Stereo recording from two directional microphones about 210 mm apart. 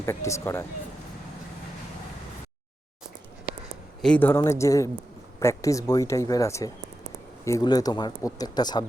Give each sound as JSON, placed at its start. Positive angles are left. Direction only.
{"t": 0.0, "sound": "speech", "side_deg": 15}
{"t": 4.0, "sound": "speech", "side_deg": 5}